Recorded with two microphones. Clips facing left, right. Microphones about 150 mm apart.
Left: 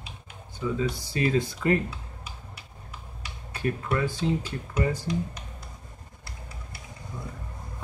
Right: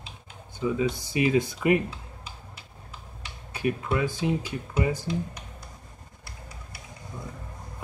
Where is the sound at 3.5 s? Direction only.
10° right (ahead or behind).